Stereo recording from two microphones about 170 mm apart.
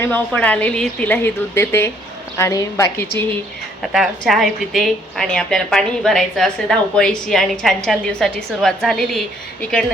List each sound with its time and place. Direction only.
0.0 s a woman's voice: 10° left (ahead or behind)
3.9 s a woman's voice: centre (ahead or behind)